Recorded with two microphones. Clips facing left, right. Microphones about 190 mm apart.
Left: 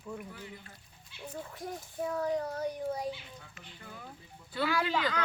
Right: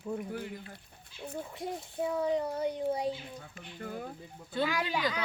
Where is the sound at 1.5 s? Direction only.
25° right (ahead or behind).